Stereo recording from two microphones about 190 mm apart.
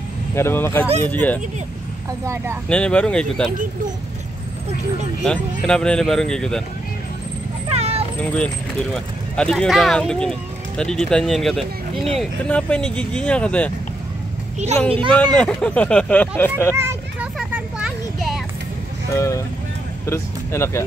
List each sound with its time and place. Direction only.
0.4 s speech: 10° left (ahead or behind)
2.2 s speech: 15° right (ahead or behind)
2.7 s speech: 5° left (ahead or behind)
5.2 s speech: 5° left (ahead or behind)
7.7 s cat: 35° right (ahead or behind)
8.2 s speech: 5° left (ahead or behind)
15.3 s speech: 5° left (ahead or behind)
16.7 s a sound: 15° right (ahead or behind)
17.4 s children playing: centre (ahead or behind)
19.1 s speech: 15° left (ahead or behind)